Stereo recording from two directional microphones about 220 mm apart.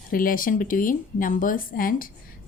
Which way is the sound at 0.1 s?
40° left (ahead or behind).